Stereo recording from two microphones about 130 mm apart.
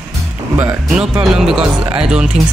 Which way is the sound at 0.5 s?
25° right (ahead or behind).